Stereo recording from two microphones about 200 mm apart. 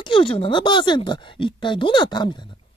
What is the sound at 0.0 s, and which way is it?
Speech, 25° left (ahead or behind).